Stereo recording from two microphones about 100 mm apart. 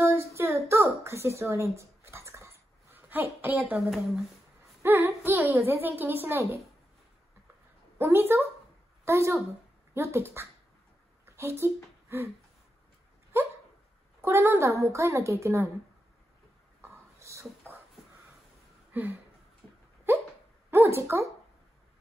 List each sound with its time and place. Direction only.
0.0 s a sound: 30° right (ahead or behind)
1.0 s dog: 25° right (ahead or behind)
3.7 s speech: centre (ahead or behind)
4.8 s a woman's voice: 25° right (ahead or behind)
8.0 s a woman's voice: 25° right (ahead or behind)
13.3 s dog: 25° right (ahead or behind)
14.2 s a woman's voice: 25° right (ahead or behind)
16.8 s a sound: 30° right (ahead or behind)
18.9 s a sound: 15° right (ahead or behind)
20.1 s hiccup: 20° right (ahead or behind)
20.7 s speech: 25° right (ahead or behind)